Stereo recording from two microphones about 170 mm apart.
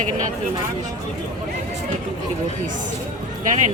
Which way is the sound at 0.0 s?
50° right (ahead or behind).